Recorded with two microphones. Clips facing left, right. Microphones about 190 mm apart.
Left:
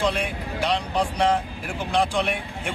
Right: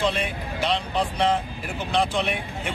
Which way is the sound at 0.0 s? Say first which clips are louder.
Left 1 dB; 10° left (ahead or behind).